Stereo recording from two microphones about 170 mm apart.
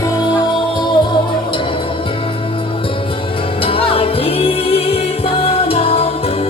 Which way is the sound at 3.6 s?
35° left (ahead or behind).